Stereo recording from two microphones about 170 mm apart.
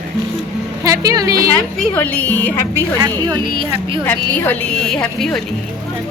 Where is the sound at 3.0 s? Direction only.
25° right (ahead or behind).